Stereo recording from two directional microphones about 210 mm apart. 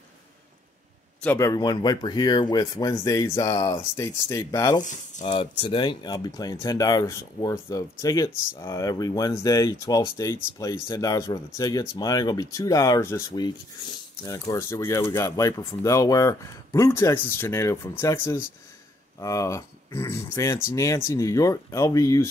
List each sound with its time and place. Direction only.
1.2 s speech: 10° left (ahead or behind)